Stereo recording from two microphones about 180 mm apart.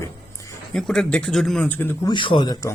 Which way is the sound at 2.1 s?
25° left (ahead or behind).